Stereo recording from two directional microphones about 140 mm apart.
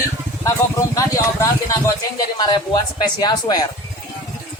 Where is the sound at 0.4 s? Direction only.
25° left (ahead or behind).